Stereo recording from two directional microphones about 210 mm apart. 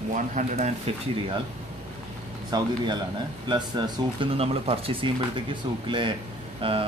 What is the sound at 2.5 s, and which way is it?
Speech, 20° right (ahead or behind).